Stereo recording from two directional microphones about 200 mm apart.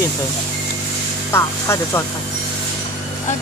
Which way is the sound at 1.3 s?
15° left (ahead or behind).